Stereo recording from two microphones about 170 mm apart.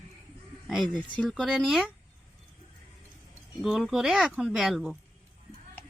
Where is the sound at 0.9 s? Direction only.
25° right (ahead or behind).